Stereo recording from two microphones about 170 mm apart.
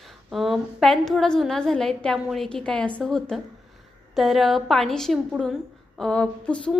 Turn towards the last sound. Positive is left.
turn(degrees=5)  # may be behind; listen again after turning